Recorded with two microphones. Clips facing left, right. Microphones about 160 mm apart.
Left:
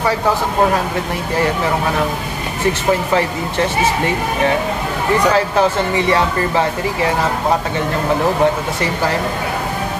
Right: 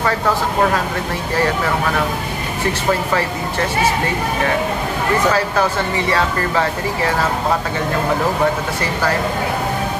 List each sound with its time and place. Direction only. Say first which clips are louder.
5.2 s speech: left 4 dB; 20° left (ahead or behind)